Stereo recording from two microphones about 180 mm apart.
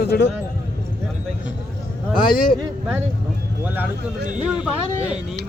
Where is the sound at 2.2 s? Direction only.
55° left (ahead or behind).